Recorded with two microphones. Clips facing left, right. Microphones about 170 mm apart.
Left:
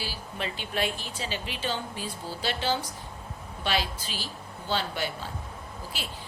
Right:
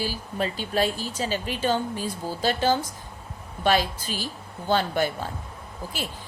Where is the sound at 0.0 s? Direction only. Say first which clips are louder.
Right 7 dB; 45° right (ahead or behind).